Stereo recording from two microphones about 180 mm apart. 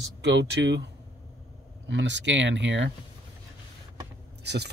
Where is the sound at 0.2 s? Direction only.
75° right (ahead or behind).